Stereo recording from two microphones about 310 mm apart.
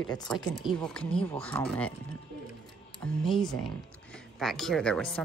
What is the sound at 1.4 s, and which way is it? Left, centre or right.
Speech, centre.